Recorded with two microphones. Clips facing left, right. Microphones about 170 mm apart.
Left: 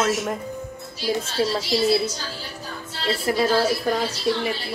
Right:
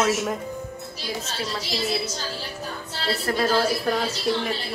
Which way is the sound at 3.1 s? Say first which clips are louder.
Left 2 dB; 10° left (ahead or behind).